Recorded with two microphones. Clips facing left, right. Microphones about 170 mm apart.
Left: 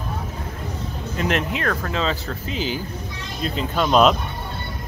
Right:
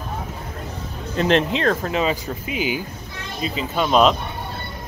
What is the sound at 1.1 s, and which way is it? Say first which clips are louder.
Speech: right 5 dB; 30° right (ahead or behind).